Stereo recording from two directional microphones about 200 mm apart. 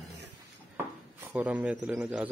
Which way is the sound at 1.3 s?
5° right (ahead or behind).